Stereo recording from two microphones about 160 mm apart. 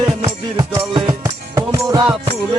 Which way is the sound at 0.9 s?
30° right (ahead or behind).